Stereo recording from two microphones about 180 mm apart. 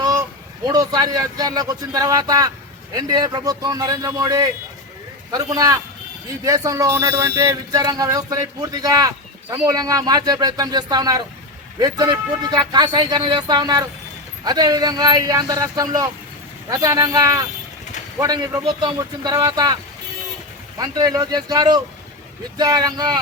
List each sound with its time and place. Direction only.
0.0 s speech: 20° right (ahead or behind)
20.7 s speech: 20° right (ahead or behind)